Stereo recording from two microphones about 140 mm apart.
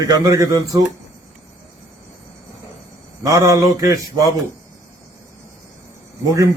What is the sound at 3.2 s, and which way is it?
A man's voice, 20° right (ahead or behind).